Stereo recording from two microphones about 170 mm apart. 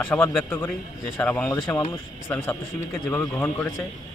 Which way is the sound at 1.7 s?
25° left (ahead or behind).